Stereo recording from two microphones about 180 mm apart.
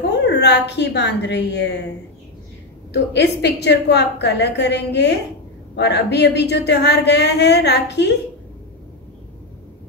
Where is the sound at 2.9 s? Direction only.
70° left (ahead or behind).